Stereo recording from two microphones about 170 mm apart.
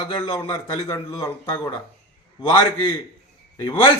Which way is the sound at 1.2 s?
30° left (ahead or behind).